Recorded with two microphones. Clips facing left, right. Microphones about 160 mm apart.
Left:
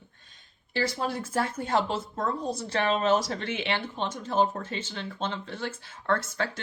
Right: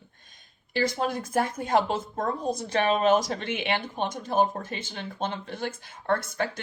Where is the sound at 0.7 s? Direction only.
15° right (ahead or behind).